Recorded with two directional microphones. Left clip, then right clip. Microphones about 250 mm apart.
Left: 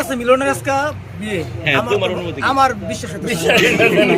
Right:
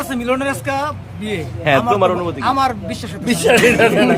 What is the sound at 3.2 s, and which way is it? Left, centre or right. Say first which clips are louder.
Speech: right 2 dB; centre.